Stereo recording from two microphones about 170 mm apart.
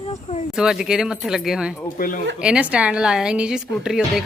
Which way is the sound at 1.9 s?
55° left (ahead or behind).